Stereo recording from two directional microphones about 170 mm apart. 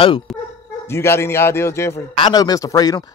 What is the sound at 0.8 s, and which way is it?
A man's voice, 15° left (ahead or behind).